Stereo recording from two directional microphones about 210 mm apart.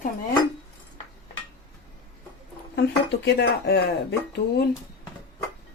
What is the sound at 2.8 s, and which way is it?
Speech, 55° left (ahead or behind).